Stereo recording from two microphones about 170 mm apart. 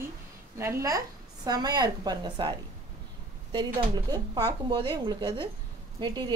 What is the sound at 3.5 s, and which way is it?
A woman's voice, 25° right (ahead or behind).